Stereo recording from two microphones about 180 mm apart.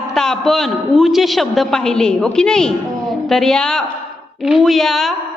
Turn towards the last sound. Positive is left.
turn(degrees=0)  # may be behind; listen again after turning